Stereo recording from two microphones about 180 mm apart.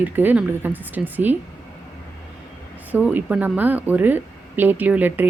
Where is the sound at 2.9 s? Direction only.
10° right (ahead or behind).